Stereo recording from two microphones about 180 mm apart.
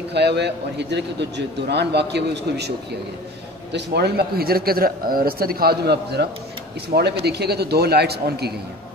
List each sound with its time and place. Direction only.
0.1 s a man's voice: 70° right (ahead or behind)
3.7 s a man's voice: 65° right (ahead or behind)